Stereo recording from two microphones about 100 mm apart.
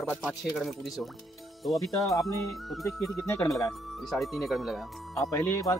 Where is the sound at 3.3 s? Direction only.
35° left (ahead or behind).